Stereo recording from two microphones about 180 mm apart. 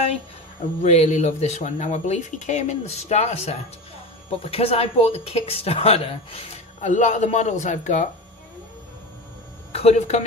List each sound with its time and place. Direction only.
0.8 s speech: 40° left (ahead or behind)
9.7 s speech: 35° left (ahead or behind)